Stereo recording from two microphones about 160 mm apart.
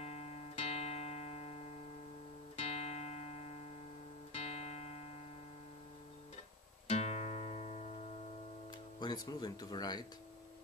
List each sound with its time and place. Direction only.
0.0 s music: 40° left (ahead or behind)
6.9 s music: 40° left (ahead or behind)
9.0 s speech: 25° left (ahead or behind)